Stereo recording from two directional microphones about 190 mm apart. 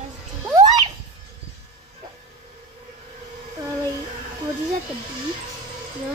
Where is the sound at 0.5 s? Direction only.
20° right (ahead or behind).